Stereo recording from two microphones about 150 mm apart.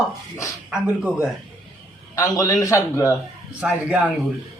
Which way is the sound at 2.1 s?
25° left (ahead or behind).